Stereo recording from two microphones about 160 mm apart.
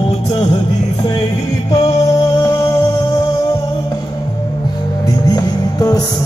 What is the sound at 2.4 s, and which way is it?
Music, 20° left (ahead or behind).